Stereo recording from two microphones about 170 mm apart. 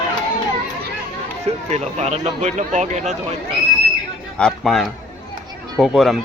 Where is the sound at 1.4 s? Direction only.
40° right (ahead or behind).